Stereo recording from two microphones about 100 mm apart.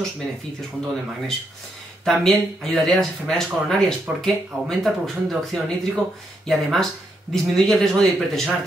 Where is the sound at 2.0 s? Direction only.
Centre (ahead or behind).